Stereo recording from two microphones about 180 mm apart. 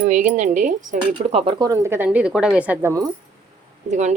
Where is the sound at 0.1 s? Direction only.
45° right (ahead or behind); by 2.9 s 10° right (ahead or behind).